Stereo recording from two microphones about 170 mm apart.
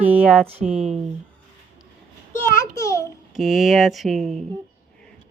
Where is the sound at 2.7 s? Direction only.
20° left (ahead or behind).